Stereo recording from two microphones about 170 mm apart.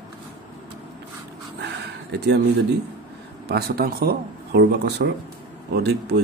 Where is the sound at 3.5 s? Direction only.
65° right (ahead or behind).